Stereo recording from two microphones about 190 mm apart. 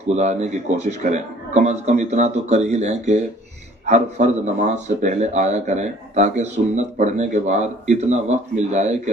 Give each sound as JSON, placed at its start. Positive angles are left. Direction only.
{"t": 0.2, "sound": "speech", "side_deg": -35}